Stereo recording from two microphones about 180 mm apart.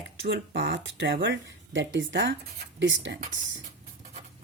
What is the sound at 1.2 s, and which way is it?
Speech, 80° right.